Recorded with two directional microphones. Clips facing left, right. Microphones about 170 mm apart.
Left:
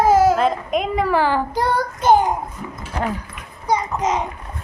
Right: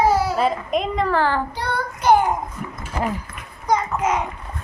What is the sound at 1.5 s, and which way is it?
Child singing, 45° left (ahead or behind).